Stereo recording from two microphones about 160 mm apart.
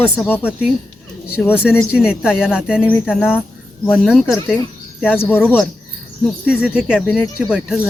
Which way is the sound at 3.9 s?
Centre (ahead or behind).